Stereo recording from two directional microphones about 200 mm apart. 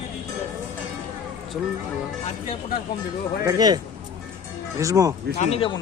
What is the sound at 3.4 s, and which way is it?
Speech, 20° right (ahead or behind).